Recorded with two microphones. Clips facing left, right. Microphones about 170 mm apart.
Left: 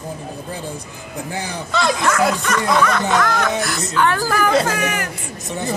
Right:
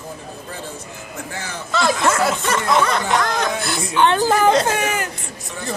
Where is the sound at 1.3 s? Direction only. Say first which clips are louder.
Left 5 dB; 15° left (ahead or behind).